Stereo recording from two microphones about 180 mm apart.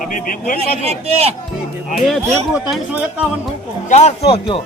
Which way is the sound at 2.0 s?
Centre (ahead or behind).